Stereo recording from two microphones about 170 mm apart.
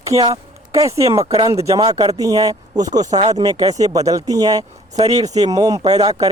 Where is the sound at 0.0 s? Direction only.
20° right (ahead or behind).